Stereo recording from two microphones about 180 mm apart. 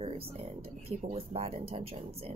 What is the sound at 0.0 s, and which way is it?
Speech, 35° right (ahead or behind).